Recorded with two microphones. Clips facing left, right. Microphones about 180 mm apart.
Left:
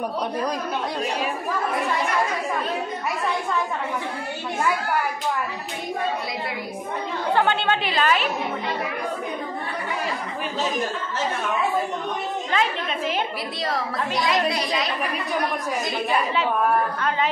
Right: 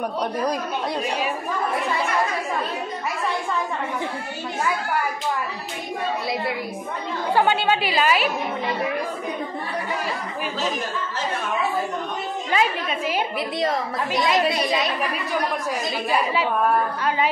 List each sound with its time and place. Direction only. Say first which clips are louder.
7.3 s a woman's voice: right 2 dB; 5° right (ahead or behind)
12.4 s a woman's voice: right 3 dB; 10° right (ahead or behind)
14.1 s a woman's voice: right 2 dB; 25° right (ahead or behind)